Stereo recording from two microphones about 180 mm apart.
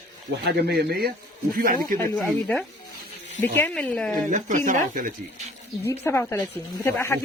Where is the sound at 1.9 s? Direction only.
10° left (ahead or behind).